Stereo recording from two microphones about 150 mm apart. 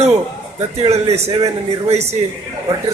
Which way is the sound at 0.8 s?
45° right (ahead or behind).